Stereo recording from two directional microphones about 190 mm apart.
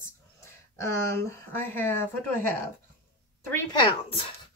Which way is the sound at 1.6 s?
10° left (ahead or behind).